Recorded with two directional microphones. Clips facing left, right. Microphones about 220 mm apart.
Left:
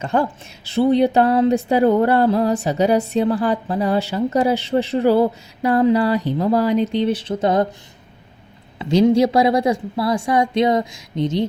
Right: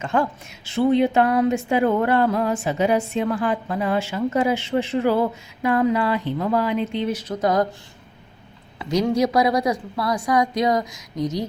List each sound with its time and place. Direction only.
0.0 s speech: 35° left (ahead or behind)
8.8 s a woman's voice: 25° left (ahead or behind)